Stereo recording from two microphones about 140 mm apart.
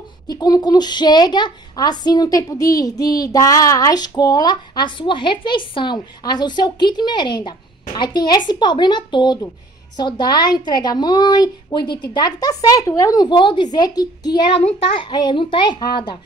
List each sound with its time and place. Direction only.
0.3 s a woman's voice: 30° left (ahead or behind)